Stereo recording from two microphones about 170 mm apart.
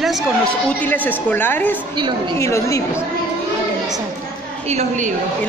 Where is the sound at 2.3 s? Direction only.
15° left (ahead or behind).